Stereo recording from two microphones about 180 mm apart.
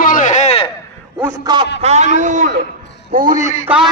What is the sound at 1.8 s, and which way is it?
A man's voice, 40° right (ahead or behind).